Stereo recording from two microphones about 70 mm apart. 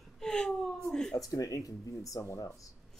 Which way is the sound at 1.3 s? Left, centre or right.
Left.